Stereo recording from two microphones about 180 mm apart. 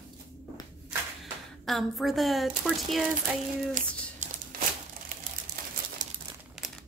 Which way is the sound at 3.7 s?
45° right (ahead or behind).